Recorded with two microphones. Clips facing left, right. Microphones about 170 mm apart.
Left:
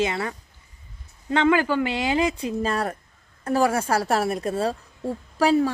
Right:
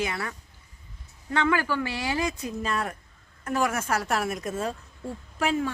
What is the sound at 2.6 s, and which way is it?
A woman's voice, 35° left (ahead or behind).